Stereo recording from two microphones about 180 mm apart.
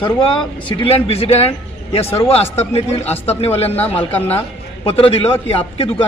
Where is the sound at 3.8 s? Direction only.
10° left (ahead or behind).